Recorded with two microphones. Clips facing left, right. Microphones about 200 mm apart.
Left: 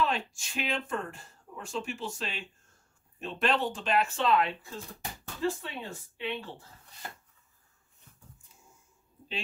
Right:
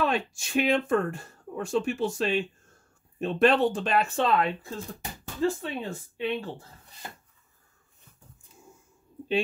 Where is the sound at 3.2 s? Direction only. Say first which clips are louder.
Right 8 dB; 55° right (ahead or behind).